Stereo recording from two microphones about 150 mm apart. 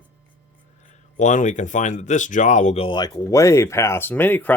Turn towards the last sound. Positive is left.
turn(degrees=10)  # may be behind; listen again after turning